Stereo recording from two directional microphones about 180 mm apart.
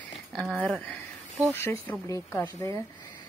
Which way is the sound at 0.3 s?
5° left (ahead or behind).